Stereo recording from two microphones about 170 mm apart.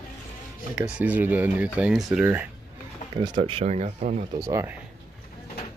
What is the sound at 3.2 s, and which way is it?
Speech, 35° right (ahead or behind).